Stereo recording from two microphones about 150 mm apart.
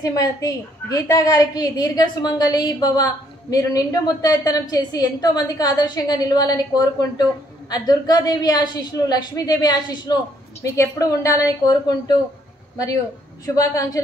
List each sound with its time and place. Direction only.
0.0 s a woman's voice: 20° left (ahead or behind)
13.6 s a woman's voice: 20° left (ahead or behind)